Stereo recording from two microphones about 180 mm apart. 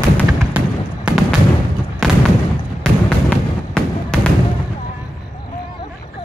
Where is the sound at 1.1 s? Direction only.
5° right (ahead or behind).